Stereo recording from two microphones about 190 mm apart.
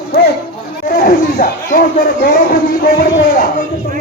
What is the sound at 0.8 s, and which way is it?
Speech, 45° left (ahead or behind).